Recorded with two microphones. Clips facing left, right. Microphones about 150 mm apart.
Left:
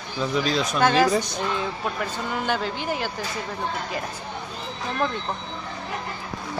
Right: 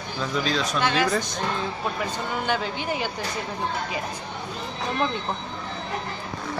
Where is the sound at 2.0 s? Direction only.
Centre (ahead or behind).